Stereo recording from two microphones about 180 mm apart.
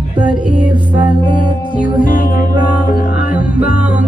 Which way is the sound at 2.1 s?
50° left (ahead or behind).